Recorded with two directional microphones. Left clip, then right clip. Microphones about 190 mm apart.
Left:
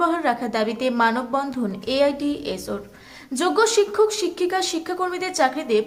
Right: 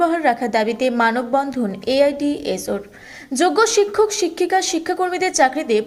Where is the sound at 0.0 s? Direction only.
10° right (ahead or behind).